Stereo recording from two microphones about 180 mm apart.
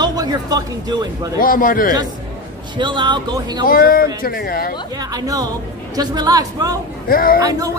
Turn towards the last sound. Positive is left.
turn(degrees=55)  # may be behind; listen again after turning